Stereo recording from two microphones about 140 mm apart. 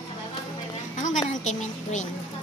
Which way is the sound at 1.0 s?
60° left (ahead or behind).